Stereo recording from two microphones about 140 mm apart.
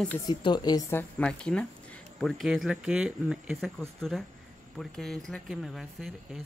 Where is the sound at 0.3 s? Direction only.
30° left (ahead or behind); by 3.7 s 5° right (ahead or behind).